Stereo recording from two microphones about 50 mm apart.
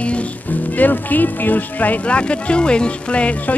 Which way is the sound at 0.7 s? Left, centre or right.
Left.